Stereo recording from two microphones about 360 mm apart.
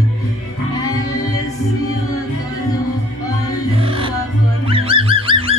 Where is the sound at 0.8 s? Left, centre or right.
Centre.